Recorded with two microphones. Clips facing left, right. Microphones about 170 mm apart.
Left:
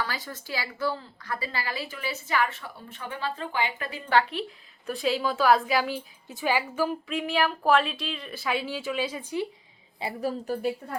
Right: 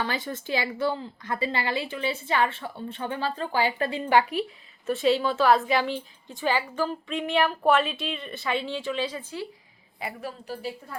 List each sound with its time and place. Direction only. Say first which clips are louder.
0.0 s a woman's voice: right 4 dB; 25° right (ahead or behind)
4.1 s a woman's voice: right 1 dB; 10° right (ahead or behind)
4.9 s a woman's voice: right 4 dB; centre (ahead or behind)
10.0 s a woman's voice: left 5 dB; 35° left (ahead or behind); by 10.9 s 50° left (ahead or behind)